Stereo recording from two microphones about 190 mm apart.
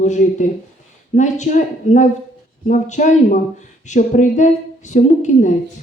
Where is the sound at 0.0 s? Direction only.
40° left (ahead or behind).